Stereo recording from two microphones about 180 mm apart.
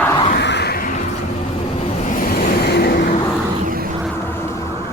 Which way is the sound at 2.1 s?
50° left (ahead or behind).